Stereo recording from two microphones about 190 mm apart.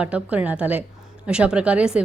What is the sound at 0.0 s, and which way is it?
A woman's voice, 5° right (ahead or behind).